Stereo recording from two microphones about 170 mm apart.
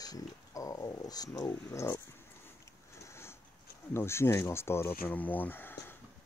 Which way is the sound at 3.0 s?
15° left (ahead or behind).